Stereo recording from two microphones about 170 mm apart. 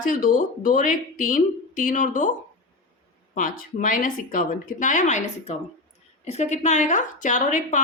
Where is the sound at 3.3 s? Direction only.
50° left (ahead or behind).